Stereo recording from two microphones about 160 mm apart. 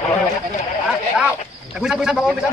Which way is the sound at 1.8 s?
5° right (ahead or behind).